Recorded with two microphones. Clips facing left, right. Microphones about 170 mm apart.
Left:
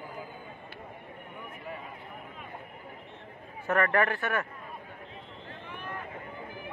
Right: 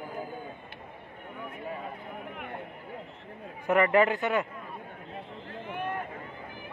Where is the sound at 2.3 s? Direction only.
65° right (ahead or behind).